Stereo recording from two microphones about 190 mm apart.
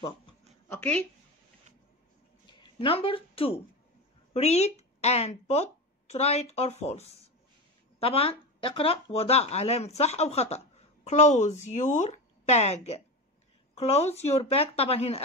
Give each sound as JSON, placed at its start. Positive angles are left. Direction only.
{"t": 0.7, "sound": "speech", "side_deg": 10}
{"t": 2.6, "sound": "speech", "side_deg": 30}